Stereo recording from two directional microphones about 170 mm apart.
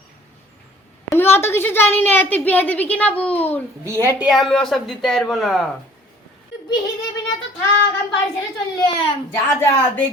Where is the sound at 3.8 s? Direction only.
15° right (ahead or behind).